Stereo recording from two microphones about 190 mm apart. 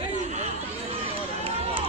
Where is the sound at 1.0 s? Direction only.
30° right (ahead or behind).